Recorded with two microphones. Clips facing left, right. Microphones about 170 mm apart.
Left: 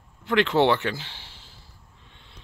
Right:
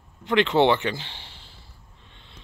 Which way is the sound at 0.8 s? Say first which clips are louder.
Right 1 dB; 5° left (ahead or behind).